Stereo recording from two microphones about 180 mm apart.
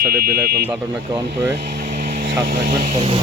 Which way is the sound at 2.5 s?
55° right (ahead or behind).